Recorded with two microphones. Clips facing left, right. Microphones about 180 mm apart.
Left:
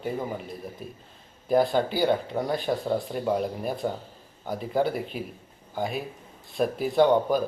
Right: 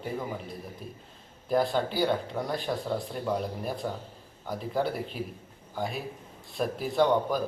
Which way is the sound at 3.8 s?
25° left (ahead or behind).